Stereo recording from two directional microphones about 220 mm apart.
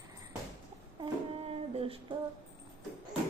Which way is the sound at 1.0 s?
25° right (ahead or behind).